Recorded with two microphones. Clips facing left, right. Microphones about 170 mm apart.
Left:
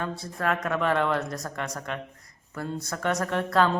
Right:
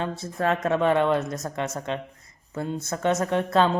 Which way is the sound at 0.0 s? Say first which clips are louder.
Right 3 dB; 25° right (ahead or behind).